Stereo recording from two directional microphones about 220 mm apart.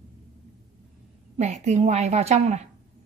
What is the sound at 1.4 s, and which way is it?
A woman's voice, 30° right (ahead or behind).